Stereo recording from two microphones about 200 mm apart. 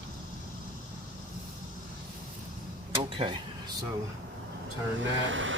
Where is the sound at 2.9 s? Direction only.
25° right (ahead or behind).